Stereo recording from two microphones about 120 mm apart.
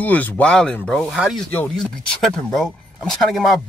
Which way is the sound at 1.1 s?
5° right (ahead or behind).